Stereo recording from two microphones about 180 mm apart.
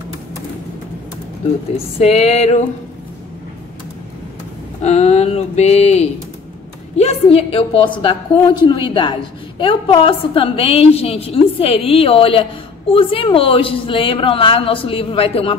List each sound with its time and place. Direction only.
2.0 s a woman's voice: 35° left (ahead or behind)
4.8 s a sound: 35° left (ahead or behind)
7.0 s a woman's voice: 35° left (ahead or behind)